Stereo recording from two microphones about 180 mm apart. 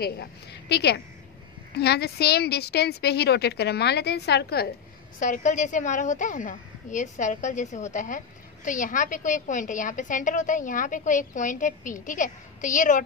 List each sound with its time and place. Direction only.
0.0 s a woman's voice: 65° left (ahead or behind)
5.2 s a woman's voice: 45° left (ahead or behind)